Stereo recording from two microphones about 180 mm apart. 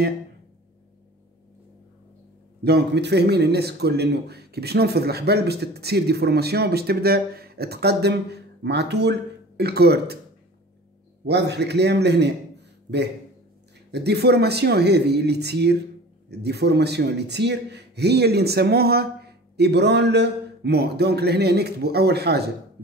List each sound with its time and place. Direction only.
2.6 s speech: 65° right (ahead or behind)
11.2 s a man's voice: 70° right (ahead or behind)
13.9 s speech: 65° right (ahead or behind)